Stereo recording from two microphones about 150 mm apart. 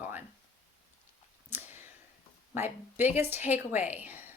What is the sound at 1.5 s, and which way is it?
Clicking, 15° right (ahead or behind).